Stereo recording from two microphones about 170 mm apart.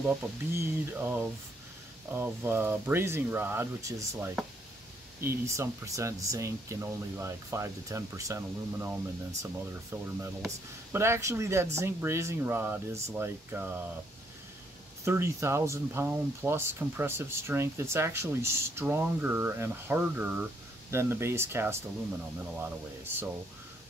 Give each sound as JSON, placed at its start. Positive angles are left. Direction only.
{"t": 0.6, "sound": "speech", "side_deg": -10}
{"t": 15.0, "sound": "speech", "side_deg": -15}